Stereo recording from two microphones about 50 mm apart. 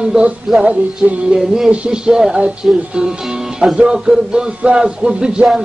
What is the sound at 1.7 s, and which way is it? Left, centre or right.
Speech, centre.